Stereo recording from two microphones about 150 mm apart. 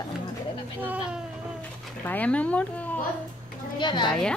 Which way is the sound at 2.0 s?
10° left (ahead or behind).